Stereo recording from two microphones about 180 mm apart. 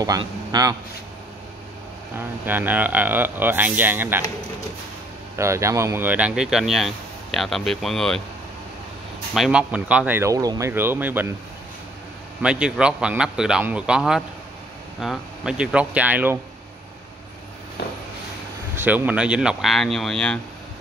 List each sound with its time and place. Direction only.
0.0 s speech: 20° right (ahead or behind)
2.1 s speech: 10° right (ahead or behind)
5.3 s speech: 15° right (ahead or behind); by 8.2 s centre (ahead or behind)
9.3 s speech: 5° right (ahead or behind)
12.4 s speech: 5° right (ahead or behind)
18.8 s speech: 10° right (ahead or behind)